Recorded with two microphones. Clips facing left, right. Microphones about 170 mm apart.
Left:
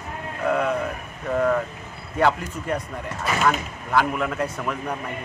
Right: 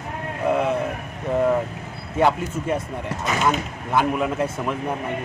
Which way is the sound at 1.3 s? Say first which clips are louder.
Right 2 dB; 15° right (ahead or behind).